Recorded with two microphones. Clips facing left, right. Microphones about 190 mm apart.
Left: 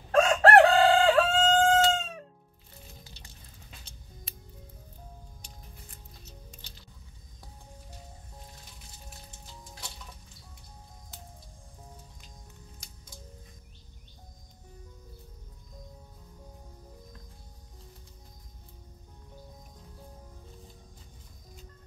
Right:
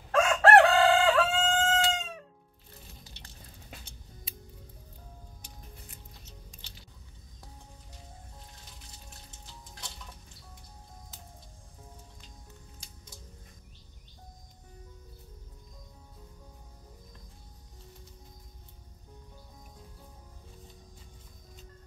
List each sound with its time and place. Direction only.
0.1 s chicken: 35° left (ahead or behind)